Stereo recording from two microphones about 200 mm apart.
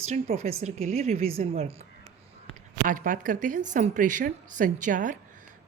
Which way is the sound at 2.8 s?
45° right (ahead or behind).